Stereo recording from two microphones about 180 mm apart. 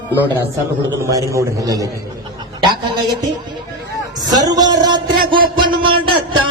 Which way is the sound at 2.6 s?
25° right (ahead or behind).